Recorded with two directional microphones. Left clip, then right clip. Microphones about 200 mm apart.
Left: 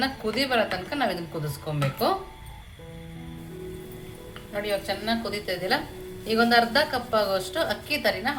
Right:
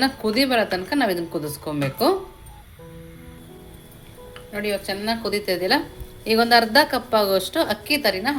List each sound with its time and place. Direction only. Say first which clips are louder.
0.0 s a woman's voice: right 6 dB; 45° right (ahead or behind)
4.5 s a woman's voice: right 2 dB; 40° right (ahead or behind)